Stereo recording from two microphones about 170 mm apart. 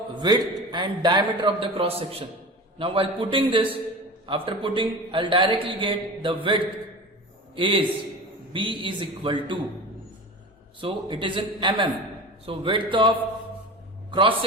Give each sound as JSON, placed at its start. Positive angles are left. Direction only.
{"t": 0.1, "sound": "a man's voice", "side_deg": -25}
{"t": 10.8, "sound": "a man's voice", "side_deg": -30}